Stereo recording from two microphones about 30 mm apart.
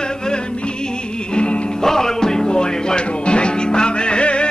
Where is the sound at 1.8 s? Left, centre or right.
Centre.